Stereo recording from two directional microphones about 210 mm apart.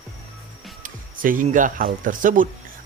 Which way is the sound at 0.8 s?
40° right (ahead or behind).